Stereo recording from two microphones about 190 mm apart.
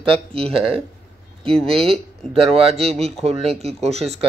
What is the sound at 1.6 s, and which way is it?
Speech, 30° right (ahead or behind).